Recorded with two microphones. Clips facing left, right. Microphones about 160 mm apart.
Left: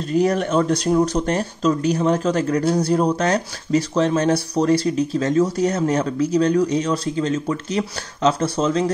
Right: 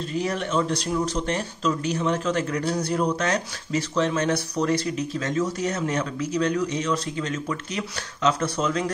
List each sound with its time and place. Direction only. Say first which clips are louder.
0.1 s speech: left 9 dB; 45° left (ahead or behind); by 8.9 s 30° left (ahead or behind)